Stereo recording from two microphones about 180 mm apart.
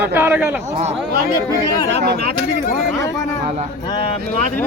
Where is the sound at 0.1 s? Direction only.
10° right (ahead or behind).